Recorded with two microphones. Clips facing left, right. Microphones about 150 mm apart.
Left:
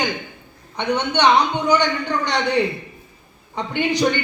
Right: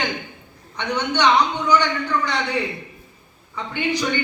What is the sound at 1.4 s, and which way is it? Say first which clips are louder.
Speech: left 1 dB; 35° left (ahead or behind).